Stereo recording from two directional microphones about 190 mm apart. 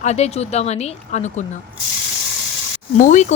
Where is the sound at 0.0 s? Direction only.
35° left (ahead or behind).